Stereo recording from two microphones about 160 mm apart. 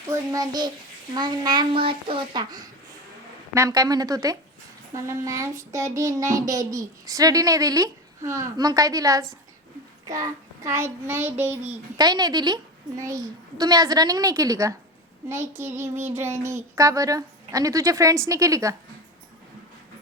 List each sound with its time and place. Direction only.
0.1 s child singing: 25° right (ahead or behind)
11.9 s child singing: 25° right (ahead or behind)